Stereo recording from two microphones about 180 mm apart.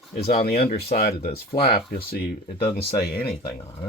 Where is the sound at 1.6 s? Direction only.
30° left (ahead or behind).